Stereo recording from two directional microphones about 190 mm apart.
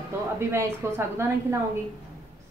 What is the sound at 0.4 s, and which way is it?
A woman's voice, 15° right (ahead or behind).